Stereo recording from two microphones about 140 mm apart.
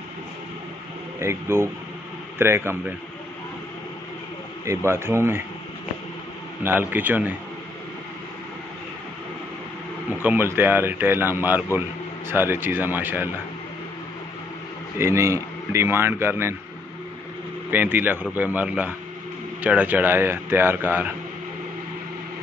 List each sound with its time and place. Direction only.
1.2 s a man's voice: 20° right (ahead or behind)
4.6 s speech: 20° right (ahead or behind)
6.6 s a man's voice: 15° right (ahead or behind)
10.1 s a man's voice: 15° right (ahead or behind)
15.0 s a man's voice: 20° right (ahead or behind)
17.6 s a man's voice: 15° right (ahead or behind)